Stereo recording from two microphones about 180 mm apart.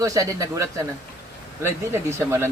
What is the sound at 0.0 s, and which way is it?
Speech, 20° right (ahead or behind).